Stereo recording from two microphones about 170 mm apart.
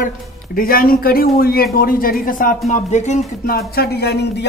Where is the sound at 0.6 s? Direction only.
60° left (ahead or behind).